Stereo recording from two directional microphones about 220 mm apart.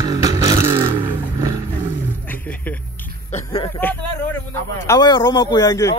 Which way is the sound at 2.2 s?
5° left (ahead or behind).